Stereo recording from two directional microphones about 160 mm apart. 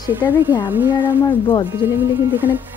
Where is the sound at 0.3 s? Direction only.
10° right (ahead or behind).